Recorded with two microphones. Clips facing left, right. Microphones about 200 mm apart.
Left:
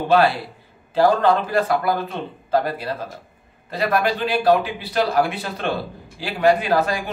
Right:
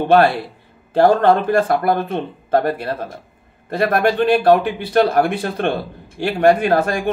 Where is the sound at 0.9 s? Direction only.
55° right (ahead or behind).